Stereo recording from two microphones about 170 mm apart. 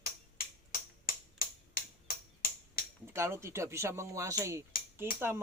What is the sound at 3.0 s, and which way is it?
Speech, 15° right (ahead or behind).